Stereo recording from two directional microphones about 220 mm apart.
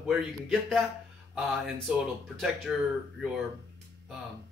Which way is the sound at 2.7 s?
Centre (ahead or behind).